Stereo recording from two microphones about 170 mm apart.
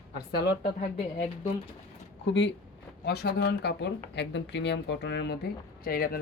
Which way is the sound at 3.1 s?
75° left (ahead or behind).